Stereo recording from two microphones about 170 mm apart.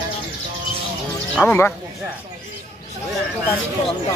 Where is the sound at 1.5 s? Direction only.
10° left (ahead or behind).